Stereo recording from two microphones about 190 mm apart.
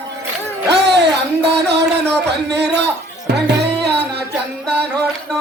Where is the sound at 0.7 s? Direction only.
60° right (ahead or behind).